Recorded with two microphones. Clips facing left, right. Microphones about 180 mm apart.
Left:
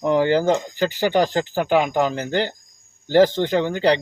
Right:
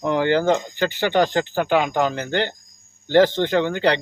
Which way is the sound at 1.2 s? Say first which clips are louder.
Right 1 dB; 40° left (ahead or behind).